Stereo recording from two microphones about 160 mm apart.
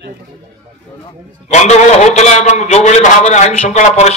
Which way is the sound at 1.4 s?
45° left (ahead or behind).